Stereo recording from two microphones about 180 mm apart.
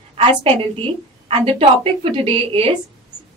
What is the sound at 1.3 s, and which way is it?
A woman's voice, 30° right (ahead or behind).